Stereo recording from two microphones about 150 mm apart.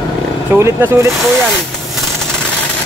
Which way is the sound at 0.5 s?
15° right (ahead or behind).